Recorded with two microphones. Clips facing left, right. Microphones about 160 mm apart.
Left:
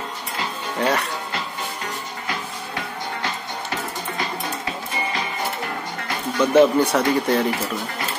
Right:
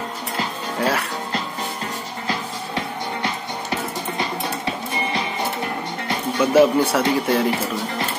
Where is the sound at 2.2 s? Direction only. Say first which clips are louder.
Right 5 dB; 25° right (ahead or behind).